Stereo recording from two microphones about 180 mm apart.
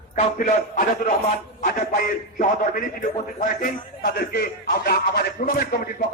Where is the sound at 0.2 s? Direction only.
45° left (ahead or behind).